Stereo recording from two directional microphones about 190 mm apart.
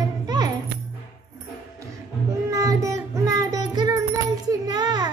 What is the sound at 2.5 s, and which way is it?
Child singing, 15° right (ahead or behind).